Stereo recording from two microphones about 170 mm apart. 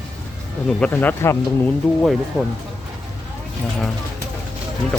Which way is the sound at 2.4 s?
15° right (ahead or behind).